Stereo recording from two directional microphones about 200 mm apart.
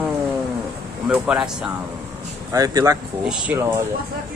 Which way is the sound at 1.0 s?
5° right (ahead or behind).